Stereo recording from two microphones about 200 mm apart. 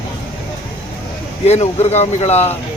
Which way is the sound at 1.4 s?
30° left (ahead or behind).